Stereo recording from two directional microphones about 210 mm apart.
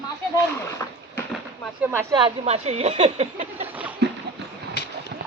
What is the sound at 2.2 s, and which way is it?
Speech, 30° right (ahead or behind).